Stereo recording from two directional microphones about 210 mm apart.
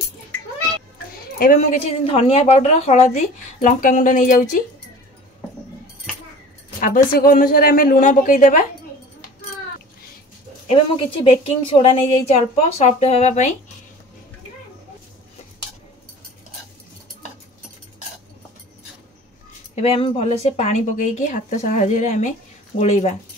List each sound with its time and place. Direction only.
1.4 s a woman's voice: 40° left (ahead or behind)
7.2 s a woman's voice: 40° left (ahead or behind)
10.7 s a woman's voice: 25° left (ahead or behind)
19.7 s a woman's voice: 25° left (ahead or behind)